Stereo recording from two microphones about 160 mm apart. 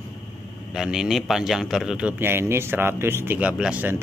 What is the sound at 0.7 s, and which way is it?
A man's voice, 5° right (ahead or behind).